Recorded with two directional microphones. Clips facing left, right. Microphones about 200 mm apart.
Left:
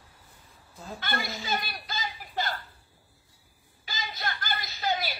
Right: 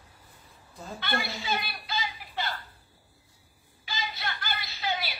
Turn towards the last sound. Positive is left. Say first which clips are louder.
# left 3 dB
turn(degrees=45)  # may be behind; listen again after turning